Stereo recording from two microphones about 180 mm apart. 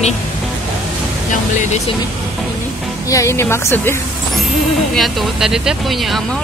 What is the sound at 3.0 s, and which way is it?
Speech, 15° left (ahead or behind).